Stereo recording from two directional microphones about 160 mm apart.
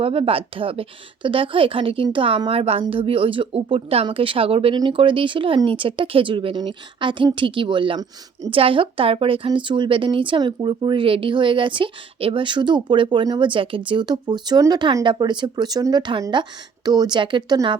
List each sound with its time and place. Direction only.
0.0 s a woman's voice: 35° right (ahead or behind)